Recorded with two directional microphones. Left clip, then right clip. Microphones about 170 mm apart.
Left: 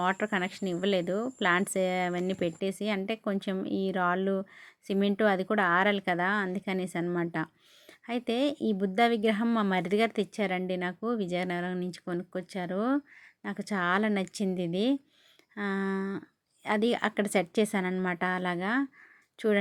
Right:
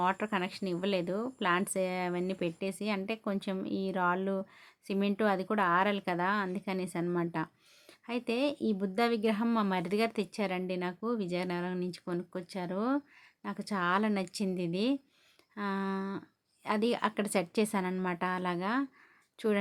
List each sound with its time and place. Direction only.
0.0 s speech: 20° left (ahead or behind)